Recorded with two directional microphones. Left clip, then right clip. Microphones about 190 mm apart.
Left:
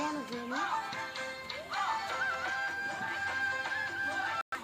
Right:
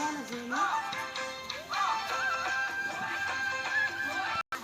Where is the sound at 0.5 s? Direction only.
40° right (ahead or behind).